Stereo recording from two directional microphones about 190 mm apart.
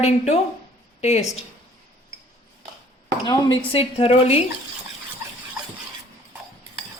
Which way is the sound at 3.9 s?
30° left (ahead or behind).